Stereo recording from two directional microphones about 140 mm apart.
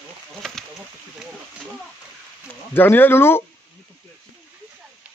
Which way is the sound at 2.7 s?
15° left (ahead or behind).